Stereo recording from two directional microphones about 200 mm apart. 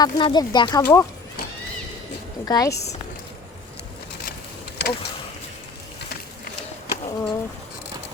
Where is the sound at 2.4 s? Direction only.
15° left (ahead or behind).